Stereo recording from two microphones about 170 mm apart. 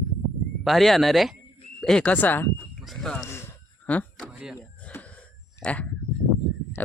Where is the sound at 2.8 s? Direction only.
Centre (ahead or behind).